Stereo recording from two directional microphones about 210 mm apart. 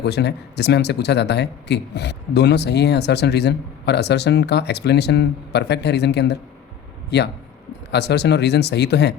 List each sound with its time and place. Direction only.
0.0 s speech: 55° left (ahead or behind)